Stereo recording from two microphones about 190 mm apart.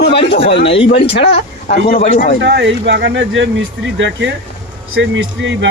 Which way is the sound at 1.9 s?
45° left (ahead or behind).